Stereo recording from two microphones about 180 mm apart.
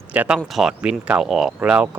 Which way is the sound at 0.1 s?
5° right (ahead or behind).